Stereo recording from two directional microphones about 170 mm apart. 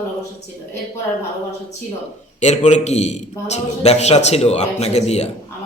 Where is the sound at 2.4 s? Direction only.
45° left (ahead or behind).